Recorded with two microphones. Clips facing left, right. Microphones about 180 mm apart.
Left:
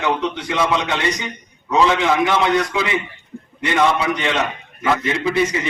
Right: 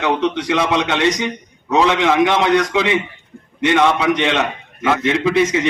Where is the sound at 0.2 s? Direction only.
85° right.